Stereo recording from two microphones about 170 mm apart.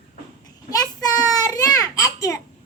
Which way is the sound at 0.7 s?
20° left (ahead or behind).